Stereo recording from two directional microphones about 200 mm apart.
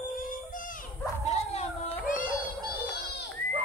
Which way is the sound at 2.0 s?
40° left (ahead or behind).